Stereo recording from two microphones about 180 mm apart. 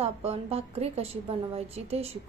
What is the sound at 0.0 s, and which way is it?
A woman's voice, 35° right (ahead or behind).